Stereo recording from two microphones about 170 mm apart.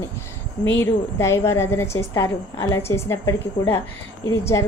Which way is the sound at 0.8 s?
15° left (ahead or behind).